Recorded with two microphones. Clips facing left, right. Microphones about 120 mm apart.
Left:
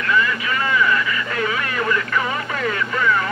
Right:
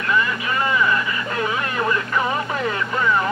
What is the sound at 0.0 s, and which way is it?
Vehicle, 25° right (ahead or behind).